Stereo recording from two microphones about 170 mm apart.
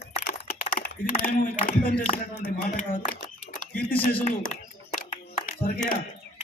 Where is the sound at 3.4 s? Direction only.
50° left (ahead or behind).